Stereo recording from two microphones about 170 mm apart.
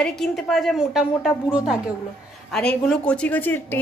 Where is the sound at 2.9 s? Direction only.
5° left (ahead or behind).